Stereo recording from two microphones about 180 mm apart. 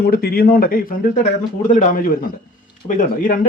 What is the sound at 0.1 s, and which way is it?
Speech, 60° left (ahead or behind).